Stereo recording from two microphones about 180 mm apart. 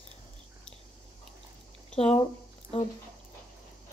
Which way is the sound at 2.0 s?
35° left (ahead or behind).